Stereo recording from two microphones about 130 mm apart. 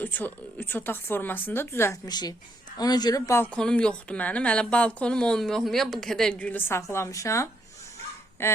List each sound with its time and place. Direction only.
0.0 s a woman's voice: 15° left (ahead or behind)
2.0 s a woman's voice: 30° left (ahead or behind)
3.4 s a woman's voice: 5° left (ahead or behind)